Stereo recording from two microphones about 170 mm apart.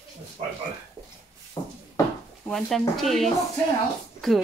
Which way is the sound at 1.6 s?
20° left (ahead or behind).